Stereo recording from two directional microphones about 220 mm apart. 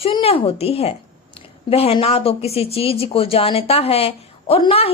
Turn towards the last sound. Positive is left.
turn(degrees=25)  # may be behind; listen again after turning